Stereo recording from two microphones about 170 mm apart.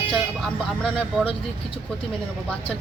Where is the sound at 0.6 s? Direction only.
5° left (ahead or behind).